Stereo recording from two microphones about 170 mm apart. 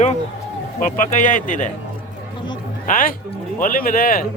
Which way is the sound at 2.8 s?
50° left (ahead or behind).